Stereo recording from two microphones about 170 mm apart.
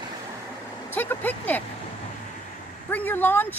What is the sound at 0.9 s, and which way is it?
Speech, 10° left (ahead or behind).